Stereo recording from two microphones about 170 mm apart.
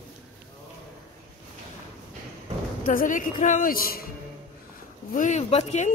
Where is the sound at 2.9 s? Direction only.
50° left (ahead or behind).